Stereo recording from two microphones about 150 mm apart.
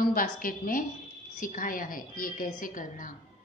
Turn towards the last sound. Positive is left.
turn(degrees=65)  # may be behind; listen again after turning